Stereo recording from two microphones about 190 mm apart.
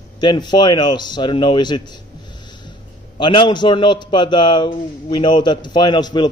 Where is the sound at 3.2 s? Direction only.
25° left (ahead or behind).